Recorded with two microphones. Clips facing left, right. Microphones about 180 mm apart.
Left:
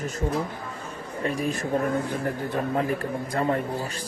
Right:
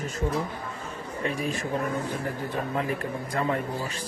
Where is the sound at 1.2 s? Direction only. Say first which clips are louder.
Left 2 dB; 40° left (ahead or behind).